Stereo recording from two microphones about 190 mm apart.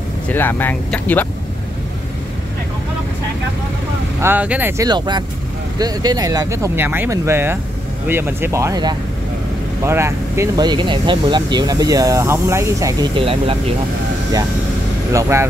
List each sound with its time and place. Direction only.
0.3 s speech: 10° left (ahead or behind)
4.2 s speech: 10° right (ahead or behind); by 13.6 s 30° right (ahead or behind)
15.1 s speech: 15° right (ahead or behind)